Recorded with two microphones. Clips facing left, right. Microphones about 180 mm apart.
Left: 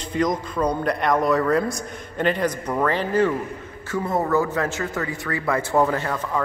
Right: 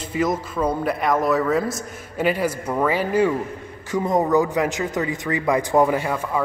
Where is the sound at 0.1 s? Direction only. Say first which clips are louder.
Even; 5° right (ahead or behind).